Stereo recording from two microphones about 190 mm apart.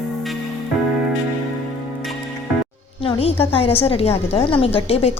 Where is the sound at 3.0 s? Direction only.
30° left (ahead or behind).